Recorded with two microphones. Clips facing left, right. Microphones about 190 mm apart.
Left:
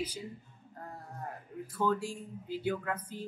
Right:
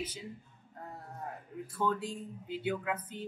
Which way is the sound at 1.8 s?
Centre (ahead or behind).